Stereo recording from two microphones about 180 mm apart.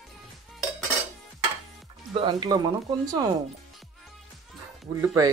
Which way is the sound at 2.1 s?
25° right (ahead or behind).